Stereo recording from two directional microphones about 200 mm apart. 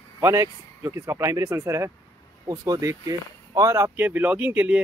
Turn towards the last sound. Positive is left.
turn(degrees=-10)  # may be behind; listen again after turning